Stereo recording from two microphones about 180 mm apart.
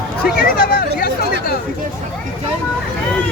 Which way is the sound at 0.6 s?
55° left (ahead or behind).